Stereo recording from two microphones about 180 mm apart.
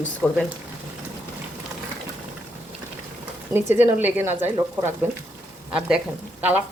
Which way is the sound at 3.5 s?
10° right (ahead or behind).